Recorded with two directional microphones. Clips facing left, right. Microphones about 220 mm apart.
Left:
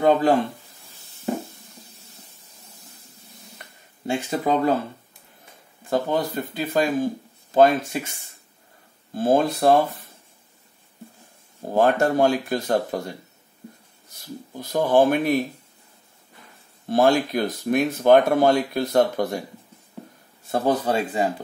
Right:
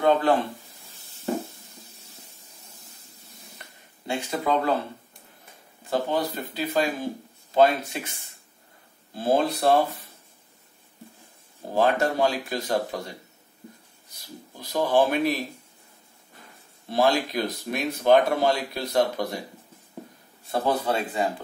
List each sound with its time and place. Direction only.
0.0 s speech: 45° left (ahead or behind)
4.1 s speech: 45° left (ahead or behind)
5.9 s speech: 50° left (ahead or behind)
11.7 s speech: 45° left (ahead or behind)
14.5 s speech: 50° left (ahead or behind)
16.9 s speech: 50° left (ahead or behind)
20.4 s speech: 45° left (ahead or behind)